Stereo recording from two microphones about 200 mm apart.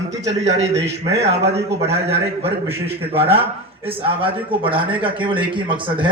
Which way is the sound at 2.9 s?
30° right (ahead or behind).